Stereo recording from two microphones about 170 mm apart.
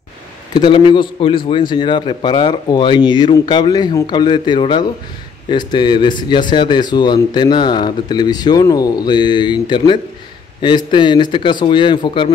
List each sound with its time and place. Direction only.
0.6 s speech: 30° left (ahead or behind)